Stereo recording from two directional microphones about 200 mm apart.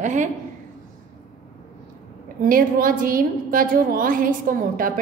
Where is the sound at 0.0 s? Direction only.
40° right (ahead or behind).